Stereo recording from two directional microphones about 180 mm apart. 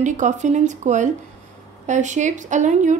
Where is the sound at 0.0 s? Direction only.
45° right (ahead or behind).